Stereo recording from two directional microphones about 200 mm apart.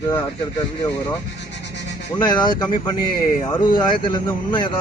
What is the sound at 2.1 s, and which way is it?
Speech, 20° left (ahead or behind).